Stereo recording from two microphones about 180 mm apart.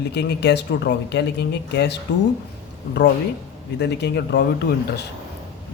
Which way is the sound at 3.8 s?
70° left (ahead or behind).